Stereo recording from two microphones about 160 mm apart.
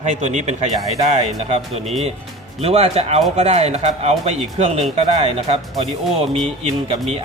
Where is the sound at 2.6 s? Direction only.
40° right (ahead or behind).